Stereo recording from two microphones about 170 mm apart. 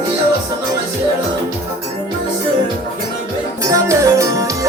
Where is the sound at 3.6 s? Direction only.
20° right (ahead or behind).